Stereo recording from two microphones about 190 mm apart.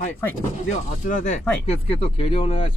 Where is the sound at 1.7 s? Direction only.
30° left (ahead or behind).